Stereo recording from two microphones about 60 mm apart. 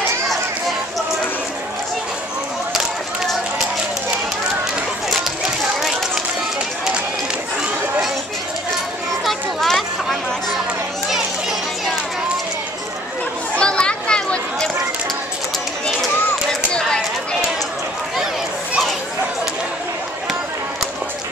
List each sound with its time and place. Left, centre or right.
9.2 s a sound: centre
13.6 s children playing: centre
16.7 s chatter: centre